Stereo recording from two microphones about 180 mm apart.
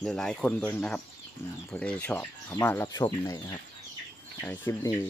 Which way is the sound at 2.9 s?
20° left (ahead or behind).